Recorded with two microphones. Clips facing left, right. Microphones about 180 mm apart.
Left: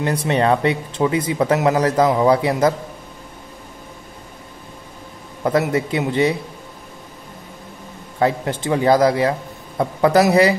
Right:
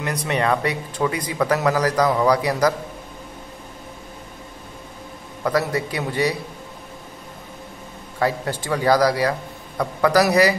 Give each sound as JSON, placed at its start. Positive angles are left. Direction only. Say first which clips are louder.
{"t": 0.0, "sound": "speech", "louder": "left 4 dB", "side_deg": 30}
{"t": 5.4, "sound": "speech", "louder": "left 3 dB", "side_deg": 25}
{"t": 8.2, "sound": "speech", "louder": "left 3 dB", "side_deg": 20}